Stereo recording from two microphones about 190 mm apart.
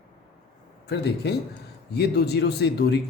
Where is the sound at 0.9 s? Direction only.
60° left (ahead or behind).